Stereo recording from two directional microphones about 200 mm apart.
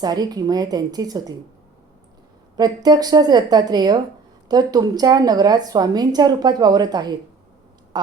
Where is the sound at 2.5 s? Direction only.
20° right (ahead or behind).